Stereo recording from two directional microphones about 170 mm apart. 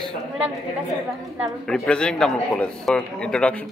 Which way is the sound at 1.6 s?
5° left (ahead or behind).